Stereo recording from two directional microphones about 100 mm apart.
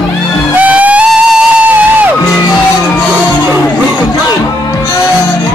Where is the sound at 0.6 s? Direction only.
15° right (ahead or behind).